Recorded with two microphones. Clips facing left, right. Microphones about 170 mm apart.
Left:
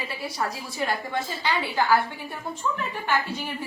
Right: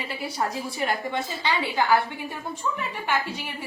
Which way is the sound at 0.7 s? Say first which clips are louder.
Left 1 dB; 25° right (ahead or behind).